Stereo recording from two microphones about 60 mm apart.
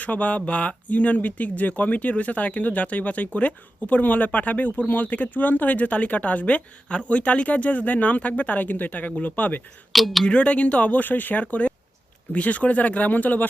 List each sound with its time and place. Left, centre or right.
0.0 s speech: left
9.9 s speech: centre
10.2 s speech: left